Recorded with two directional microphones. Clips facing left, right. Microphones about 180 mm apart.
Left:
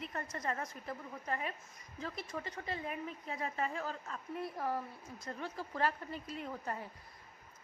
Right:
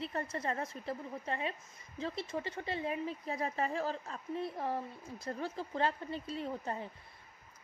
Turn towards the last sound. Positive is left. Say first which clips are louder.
# right 3 dB
turn(degrees=-25)  # may be behind; listen again after turning